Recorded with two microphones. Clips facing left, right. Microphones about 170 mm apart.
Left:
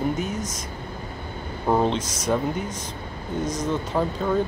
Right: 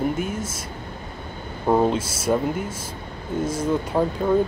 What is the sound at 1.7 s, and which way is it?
Speech, 5° right (ahead or behind).